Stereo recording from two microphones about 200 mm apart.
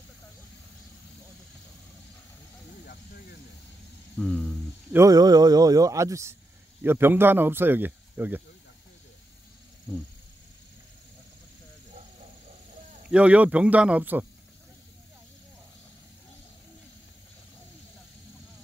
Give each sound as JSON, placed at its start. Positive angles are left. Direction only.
{"t": 4.2, "sound": "a sound", "side_deg": 5}
{"t": 4.9, "sound": "speech", "side_deg": -15}
{"t": 13.1, "sound": "speech", "side_deg": -5}